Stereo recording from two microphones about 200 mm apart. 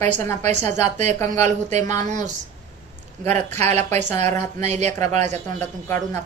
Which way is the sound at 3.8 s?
10° left (ahead or behind).